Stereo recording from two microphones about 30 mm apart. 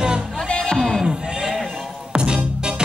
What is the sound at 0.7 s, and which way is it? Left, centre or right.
Music, centre.